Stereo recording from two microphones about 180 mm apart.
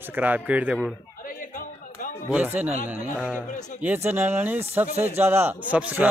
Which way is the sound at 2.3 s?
10° right (ahead or behind).